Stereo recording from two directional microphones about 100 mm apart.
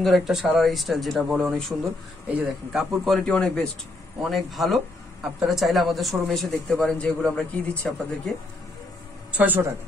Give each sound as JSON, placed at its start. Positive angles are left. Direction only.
{"t": 0.0, "sound": "speech", "side_deg": 0}
{"t": 2.2, "sound": "speech", "side_deg": -10}
{"t": 4.2, "sound": "a man's voice", "side_deg": 0}
{"t": 9.4, "sound": "speech", "side_deg": -20}